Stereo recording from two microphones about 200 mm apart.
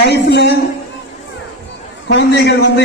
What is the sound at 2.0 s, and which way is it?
Speech, 60° left (ahead or behind).